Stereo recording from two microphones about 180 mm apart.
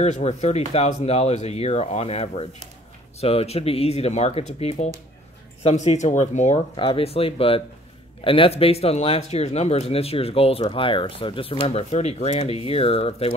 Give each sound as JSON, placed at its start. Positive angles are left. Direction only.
{"t": 0.0, "sound": "speech", "side_deg": 40}